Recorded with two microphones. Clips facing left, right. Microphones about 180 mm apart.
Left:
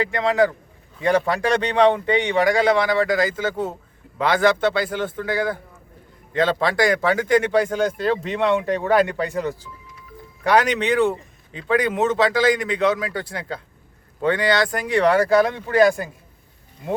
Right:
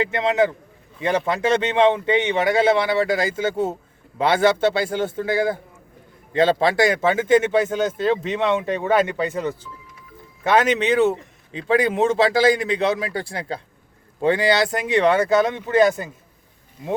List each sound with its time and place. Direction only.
0.0 s a man's voice: 20° right (ahead or behind)